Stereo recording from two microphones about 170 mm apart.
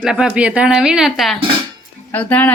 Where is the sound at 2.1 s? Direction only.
10° left (ahead or behind).